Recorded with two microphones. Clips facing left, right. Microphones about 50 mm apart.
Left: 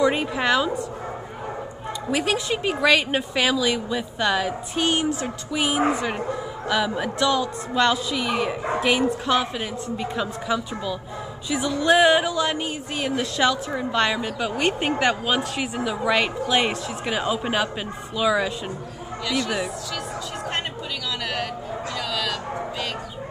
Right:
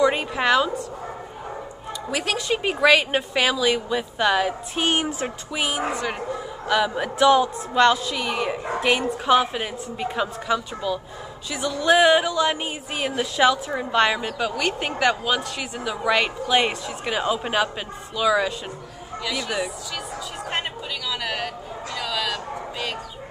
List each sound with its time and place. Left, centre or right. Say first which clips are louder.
0.0 s a woman's voice: right 1 dB; centre
2.0 s a woman's voice: left 1 dB; centre
4.8 s speech: even; right
5.5 s a woman's voice: left 3 dB; centre
5.9 s speech: left 1 dB; centre
6.7 s a woman's voice: right 2 dB; centre
7.2 s speech: right 6 dB; right
7.7 s a woman's voice: right 3 dB; centre
9.2 s a woman's voice: right 3 dB; centre
12.5 s a woman's voice: left 1 dB; centre
14.6 s a woman's voice: left 2 dB; left; by 19.7 s centre
21.9 s speech: right 2 dB; centre